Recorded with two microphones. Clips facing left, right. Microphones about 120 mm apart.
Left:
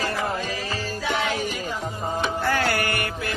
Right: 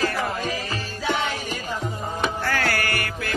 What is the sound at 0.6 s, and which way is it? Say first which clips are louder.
Music: even; 35° left (ahead or behind).